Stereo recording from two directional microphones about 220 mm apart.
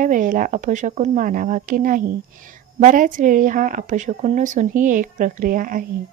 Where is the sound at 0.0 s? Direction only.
35° right (ahead or behind).